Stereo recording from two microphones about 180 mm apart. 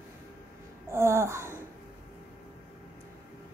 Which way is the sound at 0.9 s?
15° right (ahead or behind).